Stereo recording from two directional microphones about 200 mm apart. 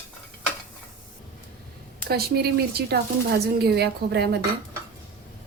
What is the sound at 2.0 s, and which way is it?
A woman's voice, 50° right (ahead or behind).